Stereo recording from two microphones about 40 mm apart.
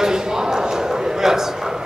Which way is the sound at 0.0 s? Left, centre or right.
Centre.